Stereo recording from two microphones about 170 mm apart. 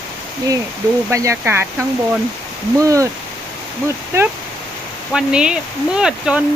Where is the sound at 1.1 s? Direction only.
15° right (ahead or behind).